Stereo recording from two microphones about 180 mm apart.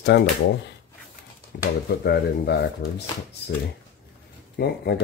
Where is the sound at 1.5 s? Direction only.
65° left (ahead or behind).